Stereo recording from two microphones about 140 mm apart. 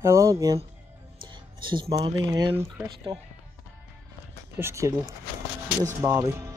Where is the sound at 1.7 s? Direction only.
30° right (ahead or behind).